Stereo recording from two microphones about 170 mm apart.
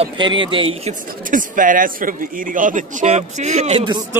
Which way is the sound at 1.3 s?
50° right (ahead or behind).